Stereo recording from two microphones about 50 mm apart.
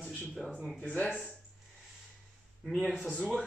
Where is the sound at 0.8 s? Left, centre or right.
Left.